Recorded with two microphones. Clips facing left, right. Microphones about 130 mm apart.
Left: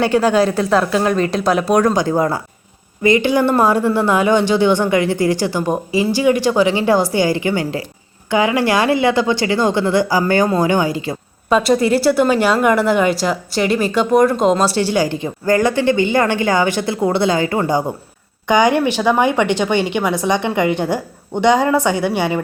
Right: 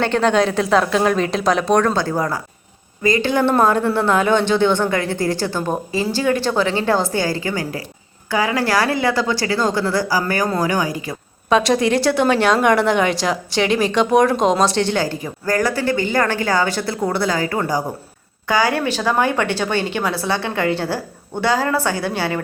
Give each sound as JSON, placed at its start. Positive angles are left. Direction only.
{"t": 0.0, "sound": "speech", "side_deg": 5}
{"t": 11.4, "sound": "speech", "side_deg": 5}